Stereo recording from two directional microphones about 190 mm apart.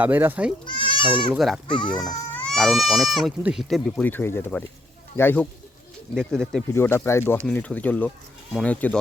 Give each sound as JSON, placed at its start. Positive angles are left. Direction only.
{"t": 0.0, "sound": "speech", "side_deg": -10}
{"t": 0.6, "sound": "speech", "side_deg": 25}
{"t": 1.3, "sound": "speech", "side_deg": 0}
{"t": 1.8, "sound": "speech", "side_deg": 25}
{"t": 2.0, "sound": "speech", "side_deg": 5}
{"t": 6.7, "sound": "speech", "side_deg": 15}